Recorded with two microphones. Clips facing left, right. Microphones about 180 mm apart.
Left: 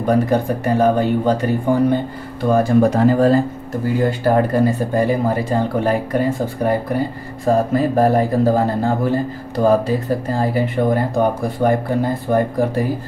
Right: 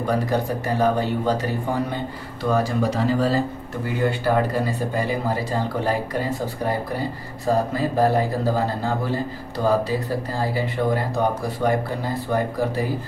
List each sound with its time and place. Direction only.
0.0 s speech: 55° left (ahead or behind)